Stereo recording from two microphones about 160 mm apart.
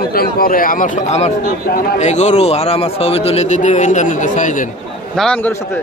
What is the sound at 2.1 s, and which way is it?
A man's voice, 45° left (ahead or behind).